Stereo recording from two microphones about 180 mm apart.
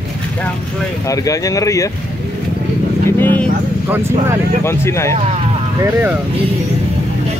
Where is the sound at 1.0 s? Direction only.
20° left (ahead or behind).